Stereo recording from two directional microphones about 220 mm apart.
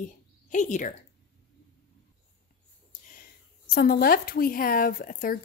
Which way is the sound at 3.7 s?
45° left (ahead or behind).